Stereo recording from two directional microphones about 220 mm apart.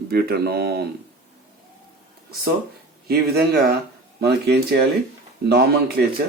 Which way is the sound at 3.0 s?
45° right (ahead or behind).